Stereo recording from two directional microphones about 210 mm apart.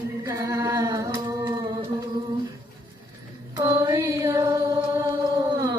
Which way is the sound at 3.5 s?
15° right (ahead or behind).